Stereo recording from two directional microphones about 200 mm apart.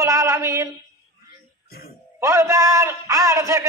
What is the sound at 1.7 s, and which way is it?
Music, 50° left (ahead or behind).